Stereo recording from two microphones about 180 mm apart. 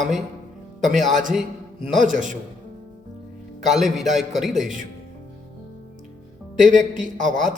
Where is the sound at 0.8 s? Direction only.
45° right (ahead or behind).